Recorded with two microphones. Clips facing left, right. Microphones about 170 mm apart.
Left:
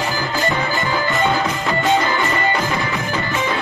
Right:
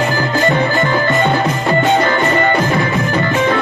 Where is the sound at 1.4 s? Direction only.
40° right (ahead or behind).